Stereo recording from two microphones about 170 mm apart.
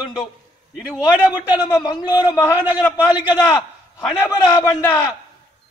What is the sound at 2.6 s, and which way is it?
Speech, 10° right (ahead or behind).